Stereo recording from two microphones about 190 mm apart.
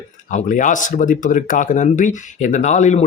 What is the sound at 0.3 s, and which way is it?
Speech, 40° left (ahead or behind).